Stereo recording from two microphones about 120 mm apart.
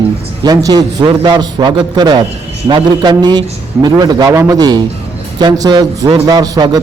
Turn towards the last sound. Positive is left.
turn(degrees=-35)  # may be behind; listen again after turning